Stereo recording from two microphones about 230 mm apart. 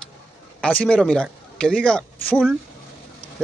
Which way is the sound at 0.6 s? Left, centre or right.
Centre.